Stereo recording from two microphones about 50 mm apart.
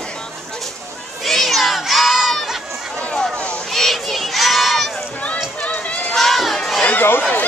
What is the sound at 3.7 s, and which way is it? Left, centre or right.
Crowd, centre.